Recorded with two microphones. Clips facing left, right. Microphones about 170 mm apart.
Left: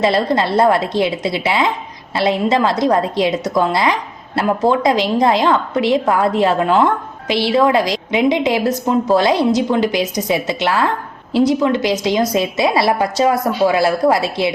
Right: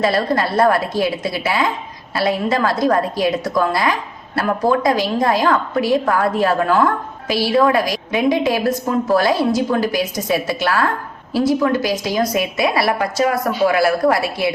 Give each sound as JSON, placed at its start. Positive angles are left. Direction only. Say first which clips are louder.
{"t": 0.0, "sound": "a woman's voice", "louder": "left 2 dB", "side_deg": 25}